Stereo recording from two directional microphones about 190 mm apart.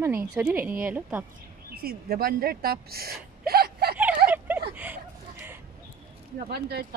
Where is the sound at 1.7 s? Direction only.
55° right (ahead or behind).